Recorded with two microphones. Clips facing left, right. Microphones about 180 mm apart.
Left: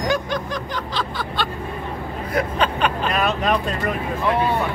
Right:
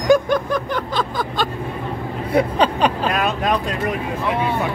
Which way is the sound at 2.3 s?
30° right (ahead or behind).